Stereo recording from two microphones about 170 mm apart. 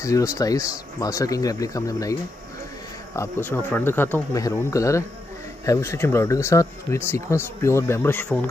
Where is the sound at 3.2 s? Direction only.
15° left (ahead or behind).